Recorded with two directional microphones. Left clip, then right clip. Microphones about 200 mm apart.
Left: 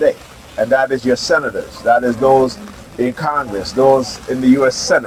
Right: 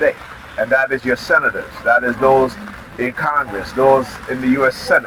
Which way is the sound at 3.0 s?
65° left (ahead or behind).